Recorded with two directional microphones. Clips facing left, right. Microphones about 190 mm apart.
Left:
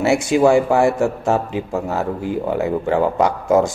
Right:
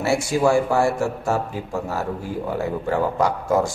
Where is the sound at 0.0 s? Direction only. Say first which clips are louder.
Left 5 dB; 20° left (ahead or behind).